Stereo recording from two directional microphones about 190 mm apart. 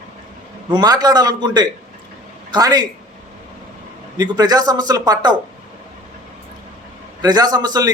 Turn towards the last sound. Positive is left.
turn(degrees=-20)  # may be behind; listen again after turning